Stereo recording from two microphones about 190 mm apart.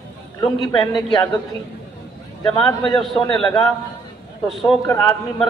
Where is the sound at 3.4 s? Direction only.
20° left (ahead or behind).